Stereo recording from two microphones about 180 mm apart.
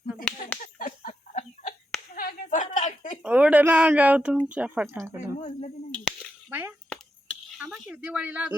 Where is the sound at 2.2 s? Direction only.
50° left (ahead or behind).